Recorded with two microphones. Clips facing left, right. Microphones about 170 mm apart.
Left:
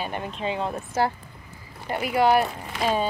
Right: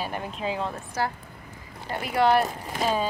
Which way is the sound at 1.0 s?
25° left (ahead or behind).